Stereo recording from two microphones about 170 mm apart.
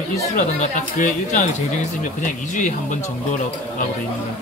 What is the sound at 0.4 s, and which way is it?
Speech, 50° left (ahead or behind).